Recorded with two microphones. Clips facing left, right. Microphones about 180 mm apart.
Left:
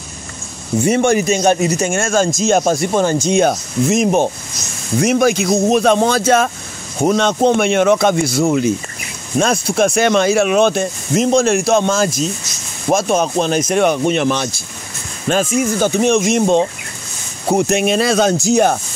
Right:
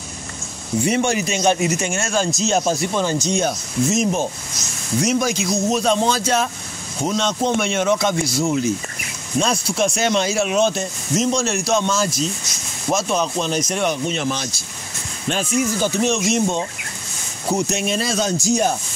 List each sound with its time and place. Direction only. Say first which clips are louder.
0.8 s a man's voice: left 7 dB; 50° left (ahead or behind); by 14.5 s 65° left (ahead or behind)
15.2 s speech: left 5 dB; 50° left (ahead or behind)